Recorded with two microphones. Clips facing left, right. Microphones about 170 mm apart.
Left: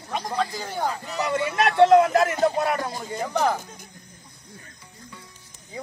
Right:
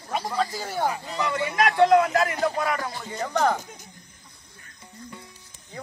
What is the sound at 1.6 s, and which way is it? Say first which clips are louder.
Speech: left 2 dB; 25° left (ahead or behind).